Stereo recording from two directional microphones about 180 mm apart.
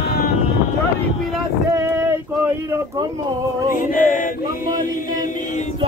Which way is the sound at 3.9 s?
45° left (ahead or behind).